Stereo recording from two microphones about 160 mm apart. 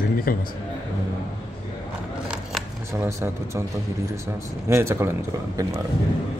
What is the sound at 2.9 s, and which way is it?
Speech, 15° right (ahead or behind).